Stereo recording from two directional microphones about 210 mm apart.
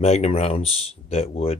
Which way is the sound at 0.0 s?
30° left (ahead or behind).